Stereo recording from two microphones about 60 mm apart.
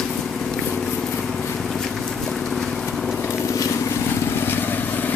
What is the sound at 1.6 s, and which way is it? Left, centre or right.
Vehicle, centre.